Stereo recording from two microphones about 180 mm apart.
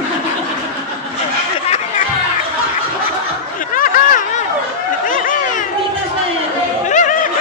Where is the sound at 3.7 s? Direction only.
50° left (ahead or behind).